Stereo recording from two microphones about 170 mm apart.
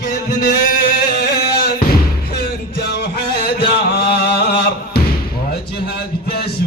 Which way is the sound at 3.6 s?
70° left (ahead or behind).